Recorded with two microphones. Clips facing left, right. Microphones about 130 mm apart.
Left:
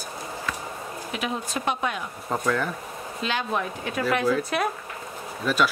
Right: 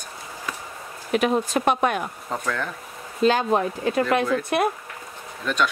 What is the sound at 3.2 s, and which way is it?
Speech, 40° right (ahead or behind).